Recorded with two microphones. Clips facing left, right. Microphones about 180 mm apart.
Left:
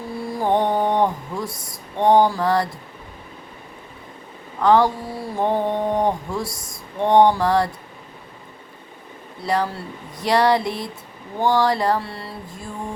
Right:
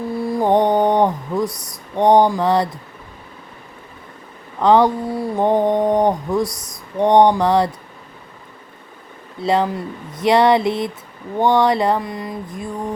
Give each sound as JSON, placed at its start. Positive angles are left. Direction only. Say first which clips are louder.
{"t": 0.3, "sound": "music", "louder": "right 4 dB", "side_deg": -20}
{"t": 2.0, "sound": "speech", "louder": "right 3 dB", "side_deg": -20}
{"t": 4.6, "sound": "speech", "louder": "right 3 dB", "side_deg": -20}
{"t": 9.4, "sound": "speech", "louder": "right 5 dB", "side_deg": -20}